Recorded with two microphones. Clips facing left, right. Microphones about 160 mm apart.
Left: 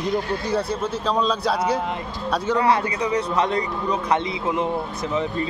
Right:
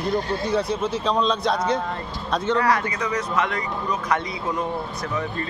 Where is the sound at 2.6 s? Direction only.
30° left (ahead or behind).